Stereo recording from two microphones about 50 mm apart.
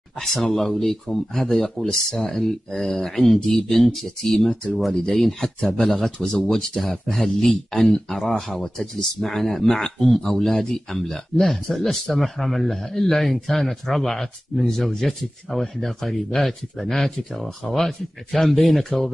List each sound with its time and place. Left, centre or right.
0.2 s speech: centre
5.6 s speech: centre
5.9 s speech: centre